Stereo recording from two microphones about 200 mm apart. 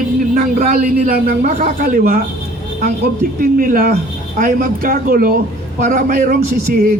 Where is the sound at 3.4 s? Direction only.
45° right (ahead or behind).